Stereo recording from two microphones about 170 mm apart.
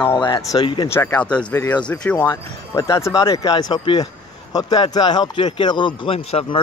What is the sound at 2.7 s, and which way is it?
Speech, 15° left (ahead or behind).